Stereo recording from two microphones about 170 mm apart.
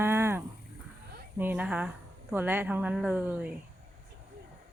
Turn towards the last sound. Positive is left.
turn(degrees=-10)  # may be behind; listen again after turning